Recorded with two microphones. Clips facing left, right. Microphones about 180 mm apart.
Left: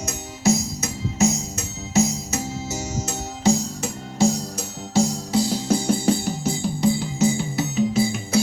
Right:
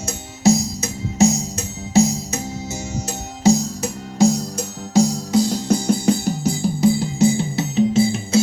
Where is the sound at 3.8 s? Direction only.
Centre (ahead or behind).